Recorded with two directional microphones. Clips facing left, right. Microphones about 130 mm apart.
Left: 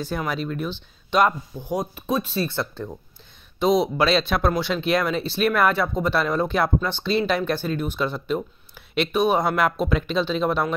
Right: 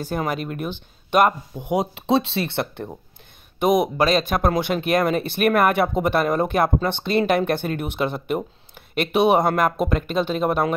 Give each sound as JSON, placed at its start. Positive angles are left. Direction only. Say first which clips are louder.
{"t": 0.0, "sound": "speech", "louder": "right 2 dB", "side_deg": -50}
{"t": 1.6, "sound": "speech", "louder": "right 4 dB", "side_deg": -20}
{"t": 2.0, "sound": "speech", "louder": "right 7 dB", "side_deg": -80}
{"t": 2.3, "sound": "speech", "louder": "right 1 dB", "side_deg": -65}
{"t": 9.1, "sound": "speech", "louder": "right 4 dB", "side_deg": -65}